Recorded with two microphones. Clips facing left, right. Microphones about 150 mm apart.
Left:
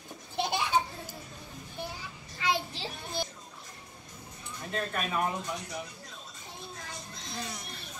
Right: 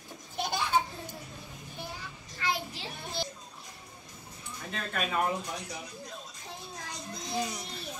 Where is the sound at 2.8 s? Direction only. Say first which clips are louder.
Left 2 dB; 30° left (ahead or behind).